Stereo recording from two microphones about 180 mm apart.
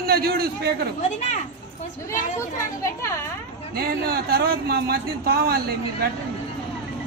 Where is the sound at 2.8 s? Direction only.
15° left (ahead or behind).